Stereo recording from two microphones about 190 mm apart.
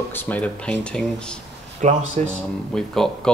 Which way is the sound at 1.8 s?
40° right (ahead or behind).